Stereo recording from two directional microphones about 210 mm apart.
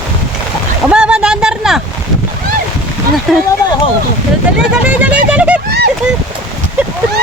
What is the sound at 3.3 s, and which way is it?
Speech, centre (ahead or behind).